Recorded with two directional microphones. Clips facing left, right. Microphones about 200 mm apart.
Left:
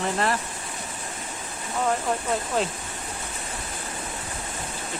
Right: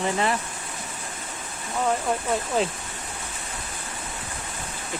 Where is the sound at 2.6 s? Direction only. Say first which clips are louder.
Right 2 dB; centre (ahead or behind).